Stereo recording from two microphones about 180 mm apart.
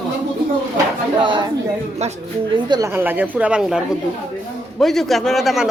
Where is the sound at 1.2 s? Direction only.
25° right (ahead or behind).